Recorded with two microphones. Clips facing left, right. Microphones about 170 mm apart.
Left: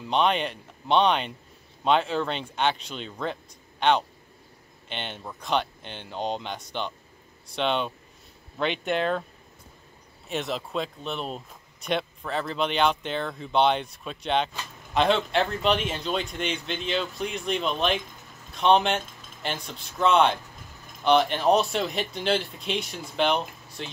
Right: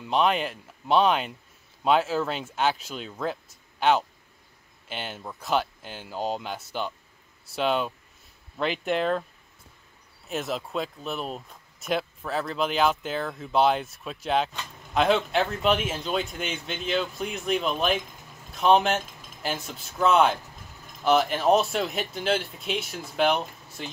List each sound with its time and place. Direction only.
0.0 s speech: centre (ahead or behind)
10.2 s speech: centre (ahead or behind)